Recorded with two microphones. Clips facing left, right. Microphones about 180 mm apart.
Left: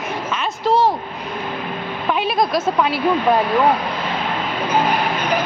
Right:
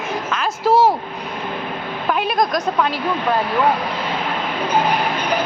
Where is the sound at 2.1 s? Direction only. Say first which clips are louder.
Even; centre (ahead or behind).